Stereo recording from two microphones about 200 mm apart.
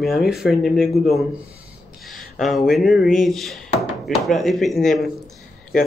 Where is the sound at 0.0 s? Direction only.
Centre (ahead or behind).